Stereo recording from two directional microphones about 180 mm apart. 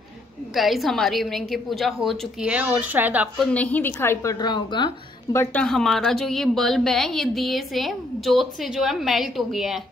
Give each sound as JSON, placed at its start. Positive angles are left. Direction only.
{"t": 0.6, "sound": "a woman's voice", "side_deg": 0}
{"t": 3.5, "sound": "a woman's voice", "side_deg": 10}
{"t": 5.4, "sound": "a woman's voice", "side_deg": 5}